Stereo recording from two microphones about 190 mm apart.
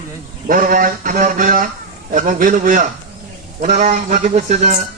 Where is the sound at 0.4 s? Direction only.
45° right (ahead or behind).